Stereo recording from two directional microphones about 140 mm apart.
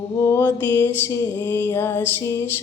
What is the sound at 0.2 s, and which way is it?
Music, 20° left (ahead or behind).